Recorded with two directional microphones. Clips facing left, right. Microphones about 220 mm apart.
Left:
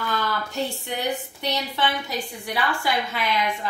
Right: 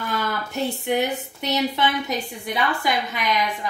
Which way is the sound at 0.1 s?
20° right (ahead or behind).